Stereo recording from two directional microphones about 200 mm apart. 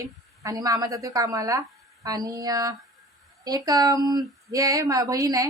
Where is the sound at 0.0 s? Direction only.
20° right (ahead or behind).